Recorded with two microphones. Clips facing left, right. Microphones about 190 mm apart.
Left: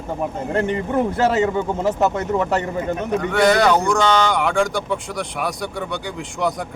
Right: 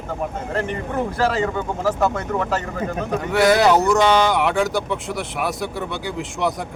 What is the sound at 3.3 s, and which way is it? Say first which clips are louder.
Speech: right 1 dB; 5° right (ahead or behind).